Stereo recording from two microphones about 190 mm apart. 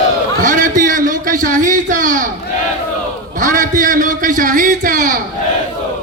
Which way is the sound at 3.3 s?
45° right (ahead or behind).